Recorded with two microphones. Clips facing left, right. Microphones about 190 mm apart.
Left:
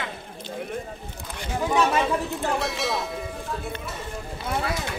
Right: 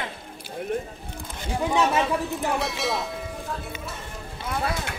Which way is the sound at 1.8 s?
5° right (ahead or behind).